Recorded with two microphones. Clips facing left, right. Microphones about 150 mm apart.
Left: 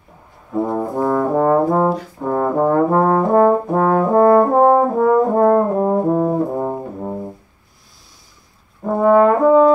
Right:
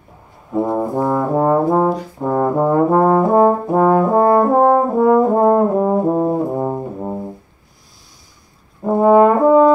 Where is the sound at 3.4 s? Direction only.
10° right (ahead or behind).